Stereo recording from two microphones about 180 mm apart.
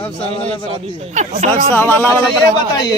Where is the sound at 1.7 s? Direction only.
10° left (ahead or behind).